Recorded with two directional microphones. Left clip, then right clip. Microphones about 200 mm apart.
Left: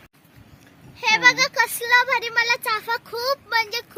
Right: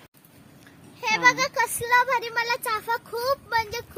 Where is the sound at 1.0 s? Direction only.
10° left (ahead or behind).